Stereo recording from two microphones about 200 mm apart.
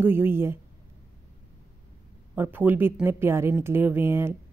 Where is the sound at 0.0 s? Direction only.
10° right (ahead or behind).